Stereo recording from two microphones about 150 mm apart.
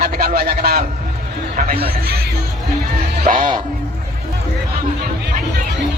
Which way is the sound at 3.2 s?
65° right (ahead or behind).